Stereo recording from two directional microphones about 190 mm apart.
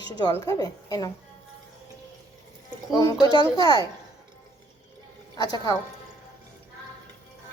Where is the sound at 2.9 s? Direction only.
20° left (ahead or behind).